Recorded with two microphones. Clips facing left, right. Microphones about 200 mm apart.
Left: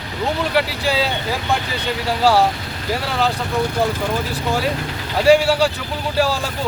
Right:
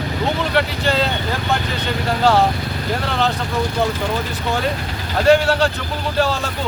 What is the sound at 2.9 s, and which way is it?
Speech, 5° left (ahead or behind).